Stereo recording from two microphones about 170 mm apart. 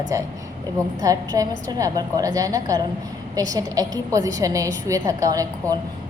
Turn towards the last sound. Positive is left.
turn(degrees=-20)  # may be behind; listen again after turning